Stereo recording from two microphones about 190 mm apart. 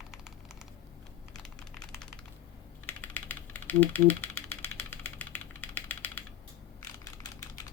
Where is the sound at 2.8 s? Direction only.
10° left (ahead or behind).